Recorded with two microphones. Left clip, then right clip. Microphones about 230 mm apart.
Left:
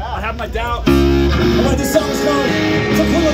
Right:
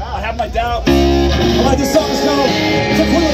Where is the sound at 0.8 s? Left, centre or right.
Centre.